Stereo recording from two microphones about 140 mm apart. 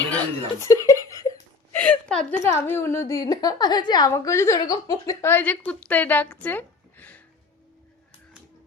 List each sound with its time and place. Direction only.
0.2 s chuckle: 20° left (ahead or behind)
1.7 s a sound: 10° left (ahead or behind)
2.4 s a woman's voice: 15° left (ahead or behind)
3.2 s a woman's voice: 30° left (ahead or behind)
4.1 s a woman's voice: 20° left (ahead or behind)
5.2 s speech: 10° left (ahead or behind)